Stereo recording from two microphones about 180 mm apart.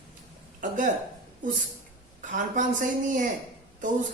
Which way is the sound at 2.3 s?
45° right (ahead or behind).